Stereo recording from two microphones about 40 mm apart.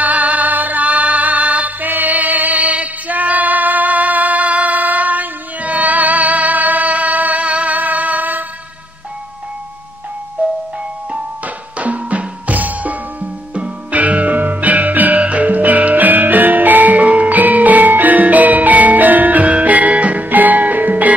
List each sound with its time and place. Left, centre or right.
0.0 s music: right
10.4 s marimba: right
11.4 s music: right
20.2 s music: right